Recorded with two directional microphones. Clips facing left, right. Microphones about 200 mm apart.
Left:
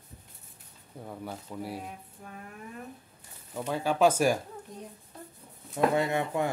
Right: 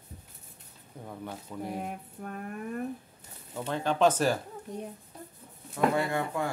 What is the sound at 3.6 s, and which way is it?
Speech, 10° left (ahead or behind).